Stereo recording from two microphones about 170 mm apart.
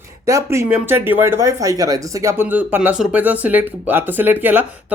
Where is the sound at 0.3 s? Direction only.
15° right (ahead or behind).